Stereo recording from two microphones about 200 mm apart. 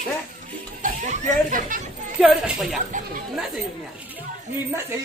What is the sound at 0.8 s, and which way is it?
Speech, 40° right (ahead or behind).